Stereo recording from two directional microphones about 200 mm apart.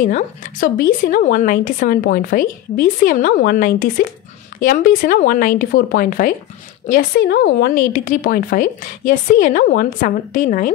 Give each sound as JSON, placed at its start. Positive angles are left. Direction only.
{"t": 0.0, "sound": "a woman's voice", "side_deg": 40}